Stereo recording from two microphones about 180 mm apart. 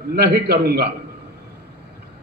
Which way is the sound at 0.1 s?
60° right (ahead or behind).